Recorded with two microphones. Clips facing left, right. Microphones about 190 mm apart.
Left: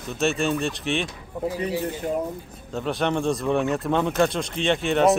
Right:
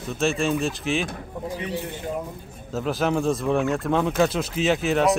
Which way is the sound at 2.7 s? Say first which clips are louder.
Right 1 dB; centre (ahead or behind).